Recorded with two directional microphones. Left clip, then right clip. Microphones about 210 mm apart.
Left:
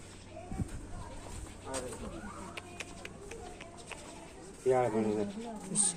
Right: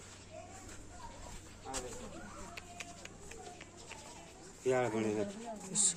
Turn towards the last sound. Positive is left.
turn(degrees=-55)  # may be behind; listen again after turning